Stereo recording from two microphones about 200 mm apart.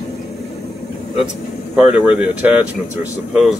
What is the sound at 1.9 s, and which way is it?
Speech, 5° right (ahead or behind).